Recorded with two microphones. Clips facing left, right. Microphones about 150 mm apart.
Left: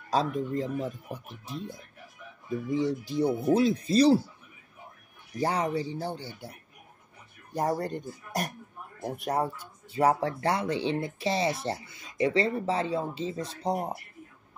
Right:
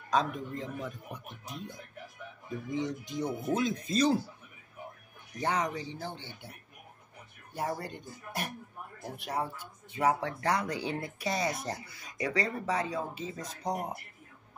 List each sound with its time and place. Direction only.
0.1 s a man's voice: 35° left (ahead or behind)
2.7 s a man's voice: 35° left (ahead or behind)
5.4 s a man's voice: 35° left (ahead or behind)
7.5 s a man's voice: 40° left (ahead or behind)
9.9 s speech: 30° left (ahead or behind)